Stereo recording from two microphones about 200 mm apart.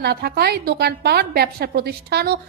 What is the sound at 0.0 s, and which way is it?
A woman's voice, 50° right (ahead or behind).